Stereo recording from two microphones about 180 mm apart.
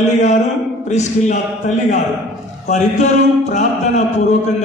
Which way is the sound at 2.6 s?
40° left (ahead or behind).